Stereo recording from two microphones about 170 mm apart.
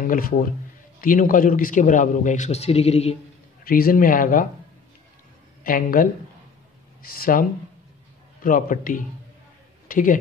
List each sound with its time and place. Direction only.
0.0 s a man's voice: 55° left (ahead or behind); by 3.2 s 40° left (ahead or behind)
3.6 s speech: 60° left (ahead or behind)
5.6 s speech: 55° left (ahead or behind)
8.5 s a man's voice: 55° left (ahead or behind)